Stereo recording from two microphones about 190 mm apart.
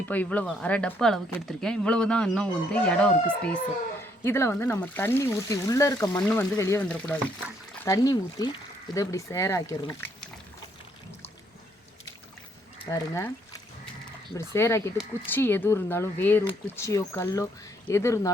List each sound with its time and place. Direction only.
0.1 s speech: 10° left (ahead or behind)
7.8 s speech: 20° left (ahead or behind)
12.8 s speech: 15° left (ahead or behind)
14.5 s speech: 15° left (ahead or behind)